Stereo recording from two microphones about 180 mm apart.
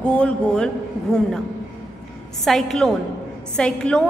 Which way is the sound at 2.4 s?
Centre (ahead or behind).